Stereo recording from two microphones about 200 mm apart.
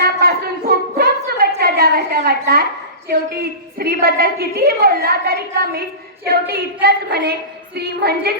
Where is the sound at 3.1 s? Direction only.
50° right (ahead or behind).